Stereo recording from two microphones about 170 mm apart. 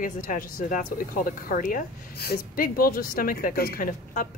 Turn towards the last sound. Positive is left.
turn(degrees=60)  # may be behind; listen again after turning